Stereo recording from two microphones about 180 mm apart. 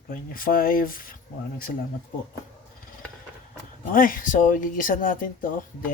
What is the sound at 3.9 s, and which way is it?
Speech, 50° left (ahead or behind).